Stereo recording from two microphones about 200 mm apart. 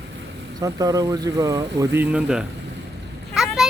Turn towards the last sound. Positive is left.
turn(degrees=0)  # may be behind; listen again after turning